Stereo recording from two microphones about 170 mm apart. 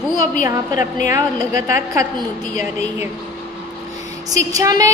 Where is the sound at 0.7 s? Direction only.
50° left (ahead or behind).